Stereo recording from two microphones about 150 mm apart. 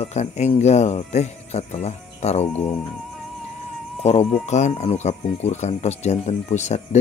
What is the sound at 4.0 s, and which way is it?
Speech, 40° left (ahead or behind).